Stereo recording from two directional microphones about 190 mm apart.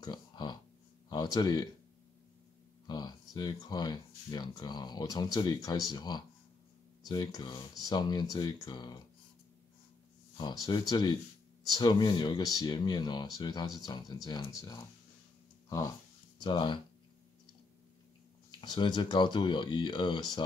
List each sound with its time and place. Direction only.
0.0 s a sound: 20° left (ahead or behind)
2.9 s speech: 20° left (ahead or behind)
10.3 s speech: 20° left (ahead or behind)
16.3 s speech: 25° left (ahead or behind)
18.6 s speech: 25° left (ahead or behind)